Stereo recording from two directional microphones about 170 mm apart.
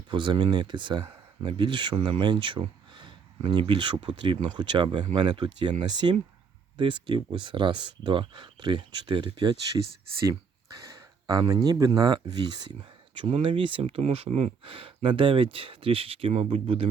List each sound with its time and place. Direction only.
0.1 s speech: 30° right (ahead or behind)
11.3 s speech: 20° right (ahead or behind)